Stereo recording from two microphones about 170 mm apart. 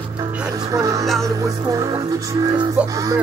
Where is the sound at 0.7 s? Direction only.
20° right (ahead or behind).